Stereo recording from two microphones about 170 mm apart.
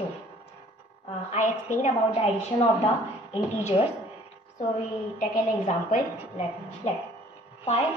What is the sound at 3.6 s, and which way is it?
Speech, 35° left (ahead or behind).